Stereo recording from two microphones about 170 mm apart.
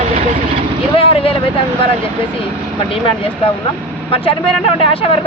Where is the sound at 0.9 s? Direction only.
35° left (ahead or behind).